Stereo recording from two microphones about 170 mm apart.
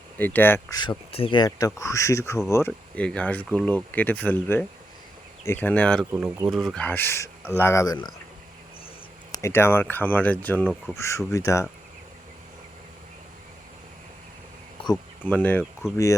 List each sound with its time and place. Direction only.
0.2 s speech: 10° left (ahead or behind)
0.8 s speech: 30° left (ahead or behind); by 6.1 s 5° left (ahead or behind)
6.1 s speech: 15° right (ahead or behind)
6.5 s speech: centre (ahead or behind); by 7.9 s 15° left (ahead or behind)
9.3 s speech: 15° left (ahead or behind)
11.3 s speech: 20° left (ahead or behind)
14.8 s insect: 35° left (ahead or behind)
15.2 s speech: 10° left (ahead or behind)